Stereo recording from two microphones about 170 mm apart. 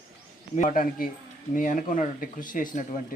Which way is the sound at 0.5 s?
50° left (ahead or behind).